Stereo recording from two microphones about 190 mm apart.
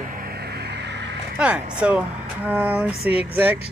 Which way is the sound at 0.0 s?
50° right (ahead or behind).